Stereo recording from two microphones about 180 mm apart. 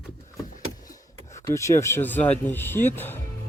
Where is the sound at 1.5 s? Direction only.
15° left (ahead or behind).